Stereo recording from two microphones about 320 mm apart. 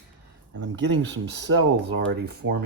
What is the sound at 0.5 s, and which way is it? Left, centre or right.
Speech, right.